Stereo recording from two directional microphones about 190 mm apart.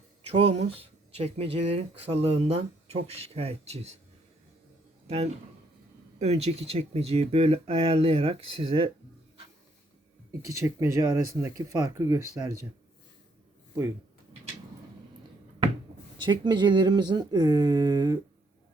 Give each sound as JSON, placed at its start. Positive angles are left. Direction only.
{"t": 0.3, "sound": "speech", "side_deg": -35}
{"t": 5.0, "sound": "a man's voice", "side_deg": -35}
{"t": 10.4, "sound": "speech", "side_deg": -15}
{"t": 16.1, "sound": "speech", "side_deg": -25}